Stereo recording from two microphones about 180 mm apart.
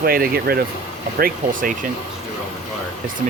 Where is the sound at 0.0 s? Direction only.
55° right (ahead or behind).